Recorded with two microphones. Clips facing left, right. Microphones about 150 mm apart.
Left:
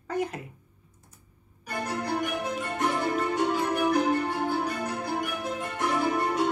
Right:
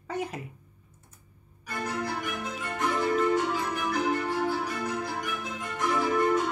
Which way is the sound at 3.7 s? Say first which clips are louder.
Left 4 dB; 30° left (ahead or behind).